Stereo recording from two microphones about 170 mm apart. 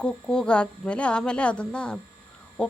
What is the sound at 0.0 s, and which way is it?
Speech, 5° left (ahead or behind).